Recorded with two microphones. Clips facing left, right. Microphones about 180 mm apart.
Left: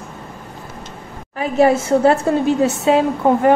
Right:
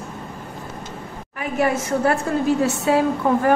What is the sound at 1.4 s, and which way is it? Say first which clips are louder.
A woman's voice: left 7 dB; 30° left (ahead or behind).